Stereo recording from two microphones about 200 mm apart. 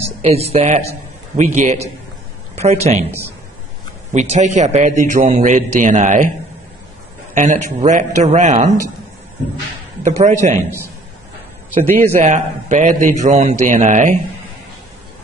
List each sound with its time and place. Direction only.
0.2 s a man's voice: 30° right (ahead or behind)
4.1 s a man's voice: 35° right (ahead or behind)
7.3 s a man's voice: 40° right (ahead or behind)
10.2 s a man's voice: 35° right (ahead or behind)
11.8 s a man's voice: 10° left (ahead or behind)
12.2 s a man's voice: 40° right (ahead or behind)